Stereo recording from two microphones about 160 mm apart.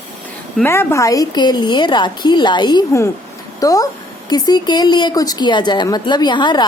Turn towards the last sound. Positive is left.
turn(degrees=30)  # may be behind; listen again after turning